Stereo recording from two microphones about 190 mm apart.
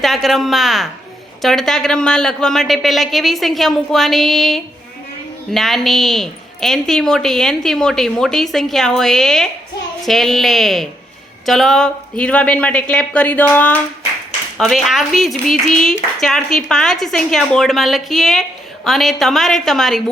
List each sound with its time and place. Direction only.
0.0 s a woman's voice: centre (ahead or behind)